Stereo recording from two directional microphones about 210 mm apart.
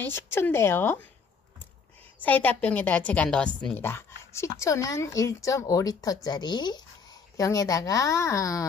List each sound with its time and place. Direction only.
0.0 s a woman's voice: 10° left (ahead or behind)
2.1 s a woman's voice: 10° left (ahead or behind)